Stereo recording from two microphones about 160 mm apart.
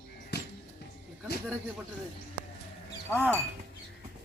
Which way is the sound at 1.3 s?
85° left.